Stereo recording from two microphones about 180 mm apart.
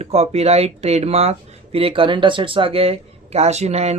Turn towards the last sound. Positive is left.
turn(degrees=-35)  # may be behind; listen again after turning